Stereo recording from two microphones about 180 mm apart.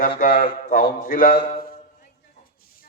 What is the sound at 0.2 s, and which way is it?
A man's voice, 50° left (ahead or behind).